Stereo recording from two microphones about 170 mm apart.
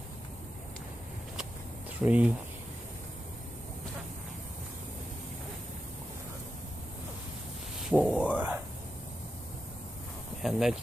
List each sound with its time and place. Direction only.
2.0 s speech: 10° right (ahead or behind)
7.9 s a sound: 5° right (ahead or behind)
10.4 s speech: centre (ahead or behind)